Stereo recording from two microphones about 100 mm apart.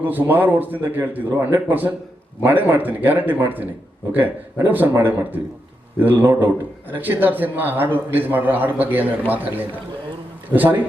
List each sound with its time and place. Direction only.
0.0 s a man's voice: 20° right (ahead or behind)